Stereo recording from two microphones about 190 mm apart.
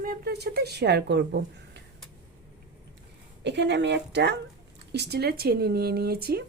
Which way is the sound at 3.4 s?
65° right (ahead or behind).